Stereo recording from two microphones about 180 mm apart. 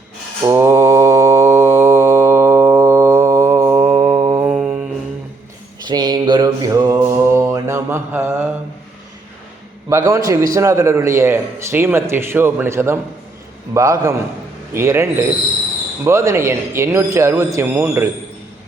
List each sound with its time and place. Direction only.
0.4 s mantra: 15° right (ahead or behind)
4.4 s mantra: 5° right (ahead or behind)
5.8 s mantra: 25° right (ahead or behind)
10.1 s a man's voice: 15° right (ahead or behind)